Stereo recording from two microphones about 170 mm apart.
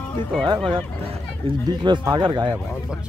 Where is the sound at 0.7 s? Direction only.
30° right (ahead or behind).